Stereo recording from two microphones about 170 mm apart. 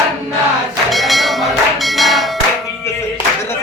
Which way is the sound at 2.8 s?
15° left (ahead or behind).